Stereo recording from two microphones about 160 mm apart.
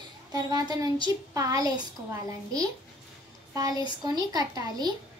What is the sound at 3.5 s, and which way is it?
A child's voice, 25° right (ahead or behind).